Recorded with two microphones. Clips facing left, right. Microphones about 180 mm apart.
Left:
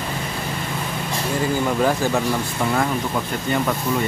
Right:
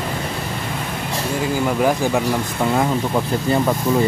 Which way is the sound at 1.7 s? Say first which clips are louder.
Right 3 dB; 10° right (ahead or behind).